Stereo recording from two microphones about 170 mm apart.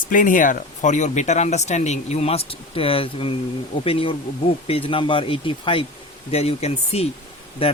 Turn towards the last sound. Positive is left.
turn(degrees=30)  # may be behind; listen again after turning